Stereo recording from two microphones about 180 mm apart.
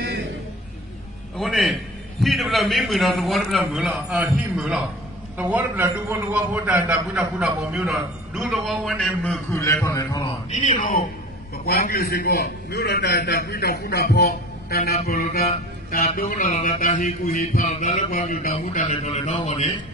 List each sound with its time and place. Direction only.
1.3 s music: centre (ahead or behind)
2.2 s a man's voice: centre (ahead or behind); by 10.3 s 20° left (ahead or behind)
10.8 s a man's voice: 45° left (ahead or behind)
16.4 s a man's voice: 35° left (ahead or behind)